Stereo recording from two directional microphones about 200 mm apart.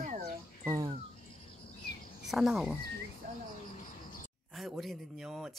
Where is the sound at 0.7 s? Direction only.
20° right (ahead or behind).